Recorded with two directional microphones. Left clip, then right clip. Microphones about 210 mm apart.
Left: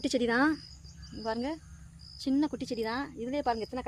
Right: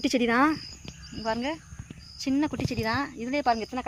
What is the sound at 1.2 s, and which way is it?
Speech, 15° right (ahead or behind).